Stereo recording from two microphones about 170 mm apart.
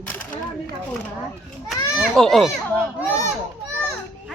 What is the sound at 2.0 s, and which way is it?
Speech, centre (ahead or behind).